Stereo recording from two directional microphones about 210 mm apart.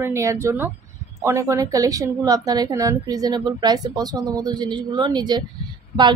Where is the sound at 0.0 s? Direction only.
15° right (ahead or behind).